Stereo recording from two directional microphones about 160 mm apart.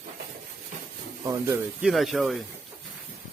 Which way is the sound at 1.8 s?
Centre (ahead or behind).